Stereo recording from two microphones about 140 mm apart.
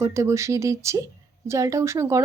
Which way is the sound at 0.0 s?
20° right (ahead or behind).